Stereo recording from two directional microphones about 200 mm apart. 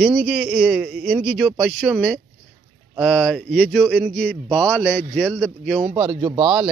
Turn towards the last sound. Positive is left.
turn(degrees=-25)  # may be behind; listen again after turning